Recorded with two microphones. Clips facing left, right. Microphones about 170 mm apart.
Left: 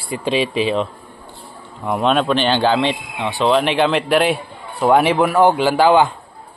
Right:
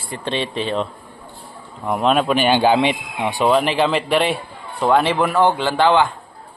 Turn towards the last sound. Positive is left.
turn(degrees=15)  # may be behind; listen again after turning